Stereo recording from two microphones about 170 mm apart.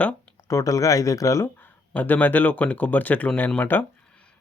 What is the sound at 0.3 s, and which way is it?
Speech, 20° left (ahead or behind).